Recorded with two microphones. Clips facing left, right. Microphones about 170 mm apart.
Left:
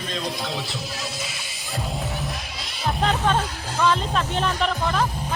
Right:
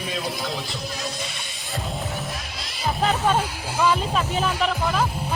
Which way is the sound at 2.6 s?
Centre (ahead or behind).